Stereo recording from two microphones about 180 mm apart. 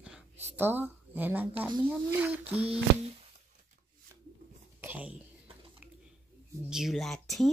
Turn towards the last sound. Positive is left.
turn(degrees=0)  # may be behind; listen again after turning